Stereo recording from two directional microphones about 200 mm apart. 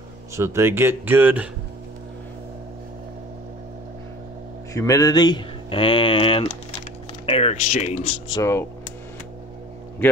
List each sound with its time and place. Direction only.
0.4 s speech: 10° right (ahead or behind)
4.7 s speech: 15° left (ahead or behind); by 7.9 s 35° left (ahead or behind)
8.3 s speech: 15° left (ahead or behind)